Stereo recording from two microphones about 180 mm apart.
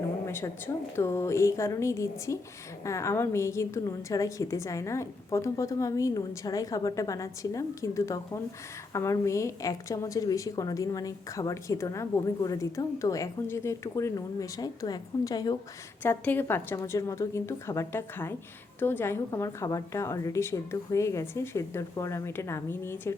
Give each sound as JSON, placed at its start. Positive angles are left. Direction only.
{"t": 0.3, "sound": "a woman's voice", "side_deg": 15}